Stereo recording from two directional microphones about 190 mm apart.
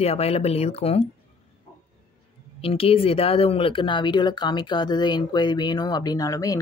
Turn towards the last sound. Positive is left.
turn(degrees=20)  # may be behind; listen again after turning